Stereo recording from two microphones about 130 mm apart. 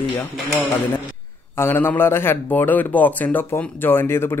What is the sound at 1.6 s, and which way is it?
A man's voice, 15° left (ahead or behind).